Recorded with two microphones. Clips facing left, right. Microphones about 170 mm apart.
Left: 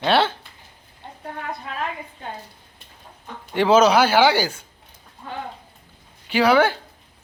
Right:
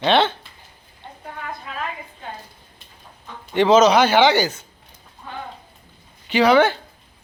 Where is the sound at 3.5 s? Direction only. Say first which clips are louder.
Right 2 dB; 10° left (ahead or behind).